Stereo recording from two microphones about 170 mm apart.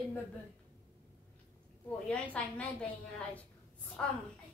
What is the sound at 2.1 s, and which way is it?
Speech, 10° left (ahead or behind).